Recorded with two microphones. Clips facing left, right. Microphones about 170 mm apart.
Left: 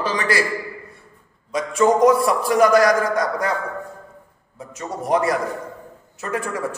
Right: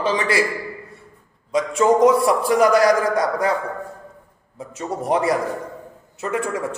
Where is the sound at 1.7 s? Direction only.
30° right (ahead or behind).